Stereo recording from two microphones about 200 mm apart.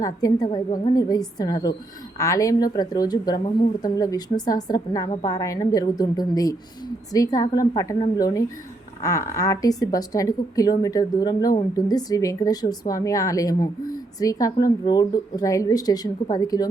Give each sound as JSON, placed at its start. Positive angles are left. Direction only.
{"t": 0.0, "sound": "a woman's voice", "side_deg": 20}